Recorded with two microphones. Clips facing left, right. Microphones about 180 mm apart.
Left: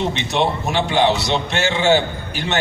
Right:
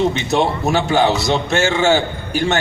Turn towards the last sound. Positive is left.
turn(degrees=-45)  # may be behind; listen again after turning